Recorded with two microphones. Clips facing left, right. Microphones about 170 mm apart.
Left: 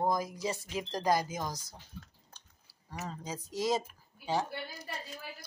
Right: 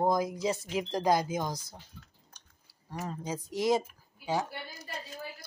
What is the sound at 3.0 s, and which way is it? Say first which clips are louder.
Speech: right 4 dB; 10° right (ahead or behind).